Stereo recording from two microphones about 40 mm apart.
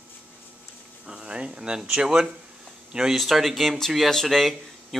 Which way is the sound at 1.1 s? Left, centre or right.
Right.